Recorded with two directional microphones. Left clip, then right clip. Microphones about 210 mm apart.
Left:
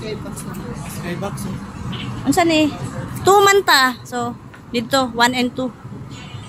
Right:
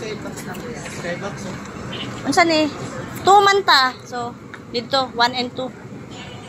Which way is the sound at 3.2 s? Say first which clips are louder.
Left 1 dB; 30° left (ahead or behind).